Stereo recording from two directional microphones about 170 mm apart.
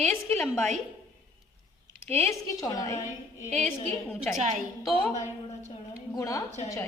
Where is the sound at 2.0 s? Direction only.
15° left (ahead or behind).